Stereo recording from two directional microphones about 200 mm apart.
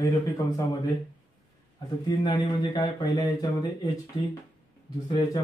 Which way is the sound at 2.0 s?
20° left (ahead or behind).